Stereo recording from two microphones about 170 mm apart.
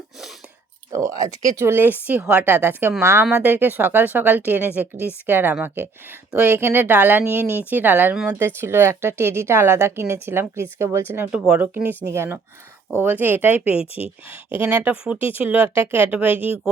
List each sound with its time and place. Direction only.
0.9 s speech: 20° right (ahead or behind)
13.7 s speech: 35° left (ahead or behind)
14.5 s speech: 10° right (ahead or behind)
16.3 s speech: 35° left (ahead or behind)